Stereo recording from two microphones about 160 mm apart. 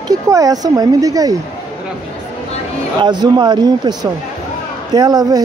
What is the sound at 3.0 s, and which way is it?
Speech, 30° right (ahead or behind).